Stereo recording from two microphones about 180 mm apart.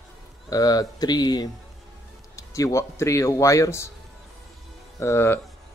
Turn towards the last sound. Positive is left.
turn(degrees=15)  # may be behind; listen again after turning